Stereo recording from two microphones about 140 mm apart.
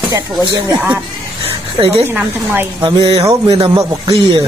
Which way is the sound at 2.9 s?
35° right (ahead or behind).